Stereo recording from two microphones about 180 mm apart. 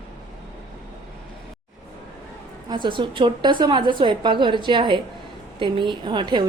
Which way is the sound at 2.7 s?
25° right (ahead or behind).